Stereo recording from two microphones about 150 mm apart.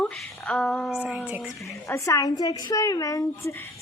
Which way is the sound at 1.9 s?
20° left (ahead or behind).